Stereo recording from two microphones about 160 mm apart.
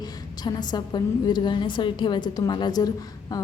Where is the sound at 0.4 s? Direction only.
25° left (ahead or behind).